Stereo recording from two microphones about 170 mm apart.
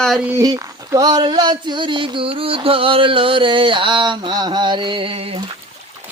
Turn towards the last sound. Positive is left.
turn(degrees=-35)  # may be behind; listen again after turning